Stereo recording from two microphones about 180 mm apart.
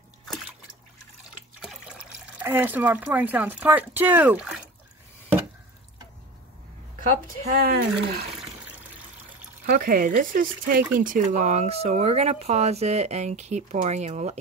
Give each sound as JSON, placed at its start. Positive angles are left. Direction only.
{"t": 1.6, "sound": "water", "side_deg": -5}
{"t": 2.4, "sound": "speech", "side_deg": -10}
{"t": 7.0, "sound": "speech", "side_deg": -50}
{"t": 9.7, "sound": "speech", "side_deg": -55}